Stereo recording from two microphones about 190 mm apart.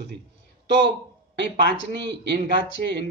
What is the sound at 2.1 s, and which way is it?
Mantra, 65° right (ahead or behind).